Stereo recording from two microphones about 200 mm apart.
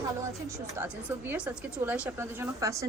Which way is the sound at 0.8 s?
10° right (ahead or behind).